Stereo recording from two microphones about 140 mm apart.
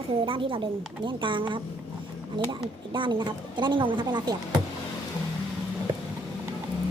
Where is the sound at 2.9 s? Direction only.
35° right (ahead or behind).